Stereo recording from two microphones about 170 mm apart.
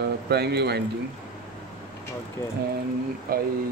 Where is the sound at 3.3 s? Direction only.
60° right (ahead or behind).